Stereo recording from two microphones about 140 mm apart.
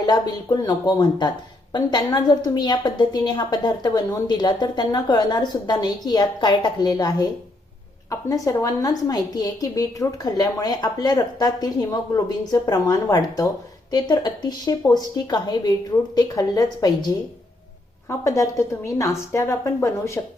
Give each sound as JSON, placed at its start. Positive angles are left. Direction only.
{"t": 0.0, "sound": "a woman's voice", "side_deg": 30}
{"t": 18.2, "sound": "a woman's voice", "side_deg": 20}